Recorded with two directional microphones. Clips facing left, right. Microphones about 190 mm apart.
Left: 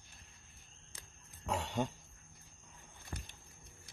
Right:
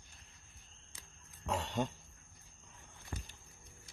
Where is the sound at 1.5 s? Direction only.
10° left (ahead or behind).